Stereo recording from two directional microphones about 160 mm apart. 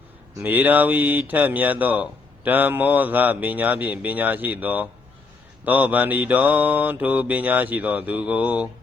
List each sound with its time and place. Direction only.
0.3 s speech: 10° right (ahead or behind)